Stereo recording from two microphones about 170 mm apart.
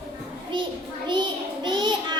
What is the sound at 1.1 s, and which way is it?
Child singing, 25° right (ahead or behind).